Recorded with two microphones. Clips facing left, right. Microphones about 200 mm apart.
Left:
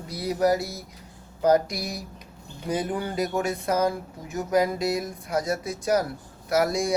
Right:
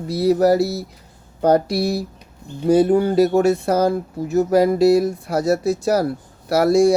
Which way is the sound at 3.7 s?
35° right (ahead or behind).